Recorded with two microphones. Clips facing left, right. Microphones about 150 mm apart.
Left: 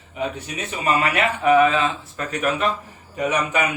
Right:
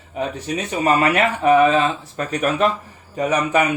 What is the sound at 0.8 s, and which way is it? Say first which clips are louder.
Speech: right 3 dB; 40° right (ahead or behind).